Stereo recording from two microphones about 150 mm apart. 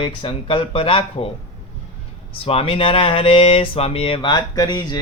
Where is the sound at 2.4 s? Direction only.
40° left (ahead or behind).